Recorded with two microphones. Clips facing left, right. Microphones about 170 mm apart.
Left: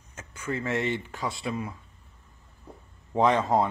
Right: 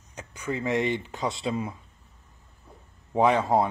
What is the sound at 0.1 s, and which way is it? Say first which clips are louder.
Speech: right 1 dB; 15° right (ahead or behind).